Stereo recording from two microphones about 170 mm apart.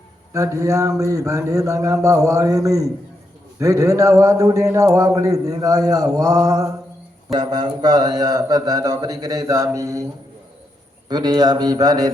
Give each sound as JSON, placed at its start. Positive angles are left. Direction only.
{"t": 0.3, "sound": "speech", "side_deg": -15}
{"t": 11.1, "sound": "speech", "side_deg": -25}